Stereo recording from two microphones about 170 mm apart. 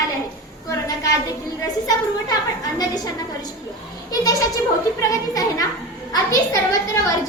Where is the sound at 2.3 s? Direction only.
25° left (ahead or behind).